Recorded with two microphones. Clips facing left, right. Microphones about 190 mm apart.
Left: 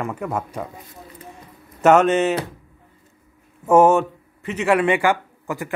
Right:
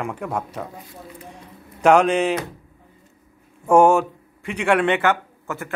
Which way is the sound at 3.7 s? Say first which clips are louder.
Even; 5° left (ahead or behind).